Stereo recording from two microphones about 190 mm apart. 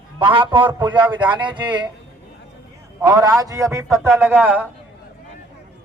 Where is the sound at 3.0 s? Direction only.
15° right (ahead or behind).